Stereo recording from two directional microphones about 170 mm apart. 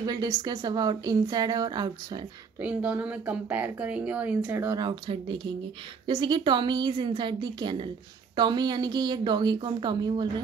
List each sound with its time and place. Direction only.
0.0 s a woman's voice: 25° right (ahead or behind)
2.6 s a woman's voice: 10° right (ahead or behind); by 10.3 s 25° right (ahead or behind)